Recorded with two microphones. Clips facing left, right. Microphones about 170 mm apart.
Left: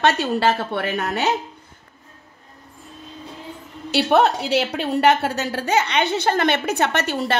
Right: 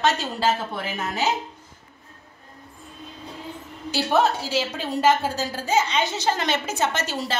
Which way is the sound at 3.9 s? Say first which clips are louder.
Left 4 dB; 65° left (ahead or behind).